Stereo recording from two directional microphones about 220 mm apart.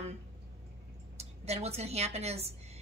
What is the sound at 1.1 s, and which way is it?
Speech, 30° right (ahead or behind).